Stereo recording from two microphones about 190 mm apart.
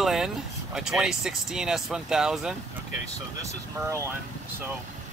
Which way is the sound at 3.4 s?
15° right (ahead or behind).